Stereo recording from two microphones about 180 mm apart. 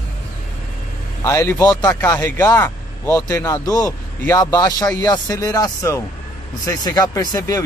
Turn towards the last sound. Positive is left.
turn(degrees=20)  # may be behind; listen again after turning